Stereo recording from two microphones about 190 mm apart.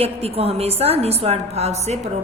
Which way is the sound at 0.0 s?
30° right (ahead or behind).